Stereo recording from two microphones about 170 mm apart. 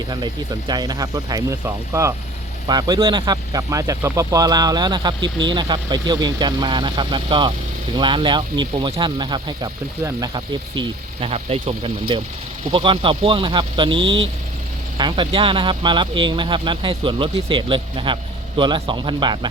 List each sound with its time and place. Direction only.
0.7 s speech: 25° right (ahead or behind)